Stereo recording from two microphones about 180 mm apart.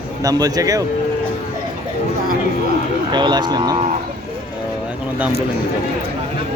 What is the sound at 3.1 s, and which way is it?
Speech, 25° right (ahead or behind).